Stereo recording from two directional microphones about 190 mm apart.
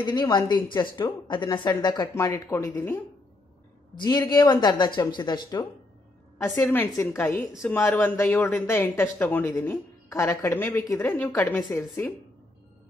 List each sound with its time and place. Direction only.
0.0 s speech: 20° left (ahead or behind)
4.0 s speech: 20° left (ahead or behind)